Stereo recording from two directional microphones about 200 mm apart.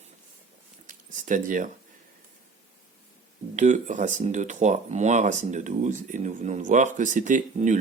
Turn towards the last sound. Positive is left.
turn(degrees=-40)  # may be behind; listen again after turning